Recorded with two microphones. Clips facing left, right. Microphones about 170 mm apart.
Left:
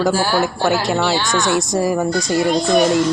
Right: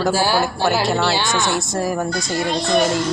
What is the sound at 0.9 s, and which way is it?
Speech, 15° left (ahead or behind).